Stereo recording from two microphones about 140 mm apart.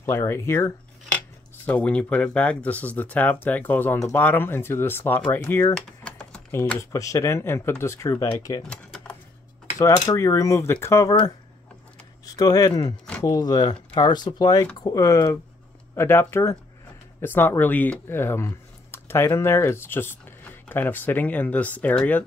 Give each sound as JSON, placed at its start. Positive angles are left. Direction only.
{"t": 0.0, "sound": "cutlery", "side_deg": 20}
{"t": 1.7, "sound": "speech", "side_deg": 10}
{"t": 5.8, "sound": "typing", "side_deg": 5}
{"t": 6.8, "sound": "speech", "side_deg": 20}
{"t": 8.6, "sound": "typing", "side_deg": 5}
{"t": 10.0, "sound": "speech", "side_deg": 20}
{"t": 12.3, "sound": "speech", "side_deg": 25}